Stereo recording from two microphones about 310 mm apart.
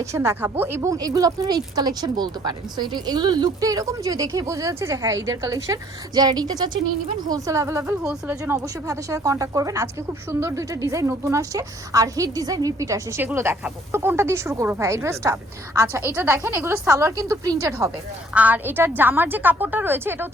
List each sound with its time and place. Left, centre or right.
0.0 s a woman's voice: centre